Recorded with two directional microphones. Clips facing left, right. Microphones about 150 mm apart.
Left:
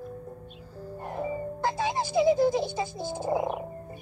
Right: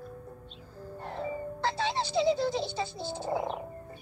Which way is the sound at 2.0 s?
50° left (ahead or behind).